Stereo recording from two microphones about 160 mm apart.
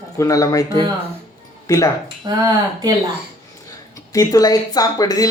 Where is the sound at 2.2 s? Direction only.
25° right (ahead or behind).